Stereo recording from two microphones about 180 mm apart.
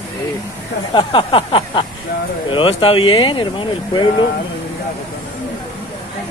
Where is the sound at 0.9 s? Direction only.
30° left (ahead or behind).